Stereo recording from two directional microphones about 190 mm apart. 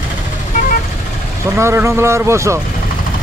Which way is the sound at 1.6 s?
15° right (ahead or behind).